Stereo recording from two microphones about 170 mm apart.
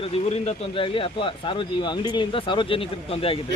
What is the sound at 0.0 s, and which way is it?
Speech, 40° left (ahead or behind).